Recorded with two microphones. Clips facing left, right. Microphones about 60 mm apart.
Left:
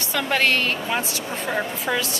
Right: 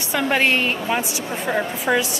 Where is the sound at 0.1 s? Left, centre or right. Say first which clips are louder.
Right 2 dB; centre.